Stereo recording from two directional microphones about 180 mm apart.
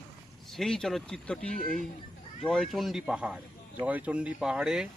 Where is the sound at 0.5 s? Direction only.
Centre (ahead or behind).